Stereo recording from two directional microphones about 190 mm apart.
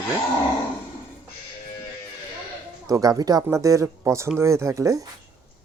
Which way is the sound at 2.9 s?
20° right (ahead or behind).